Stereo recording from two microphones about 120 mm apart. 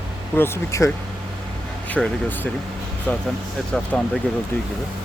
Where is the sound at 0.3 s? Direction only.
20° left (ahead or behind).